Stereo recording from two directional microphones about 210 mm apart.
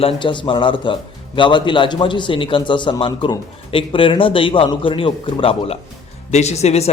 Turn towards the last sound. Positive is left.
turn(degrees=30)  # may be behind; listen again after turning